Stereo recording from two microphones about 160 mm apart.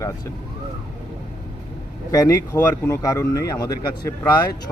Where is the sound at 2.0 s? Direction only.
20° left (ahead or behind).